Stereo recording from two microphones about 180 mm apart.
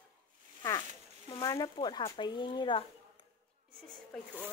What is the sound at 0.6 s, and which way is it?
Zipper, 20° left (ahead or behind).